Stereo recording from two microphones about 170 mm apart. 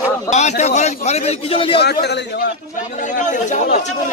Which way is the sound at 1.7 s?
75° left (ahead or behind).